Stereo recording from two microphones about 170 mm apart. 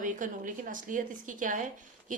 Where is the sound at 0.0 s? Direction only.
50° right (ahead or behind).